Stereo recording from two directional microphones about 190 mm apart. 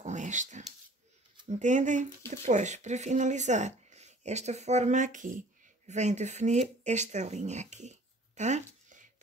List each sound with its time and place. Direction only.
0.0 s dog: 40° right (ahead or behind)
1.6 s speech: 40° right (ahead or behind)